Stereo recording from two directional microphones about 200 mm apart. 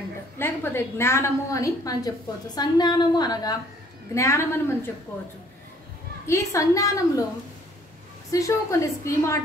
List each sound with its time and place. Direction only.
0.4 s a woman's voice: 10° left (ahead or behind)
6.2 s a woman's voice: 15° left (ahead or behind)
8.3 s a woman's voice: 15° left (ahead or behind)